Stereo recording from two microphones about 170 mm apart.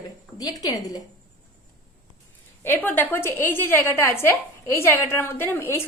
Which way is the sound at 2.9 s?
15° left (ahead or behind).